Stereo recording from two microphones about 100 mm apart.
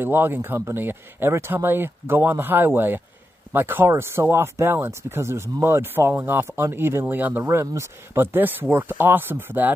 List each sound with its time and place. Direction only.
0.0 s speech: 20° right (ahead or behind)
7.4 s speech: 30° right (ahead or behind)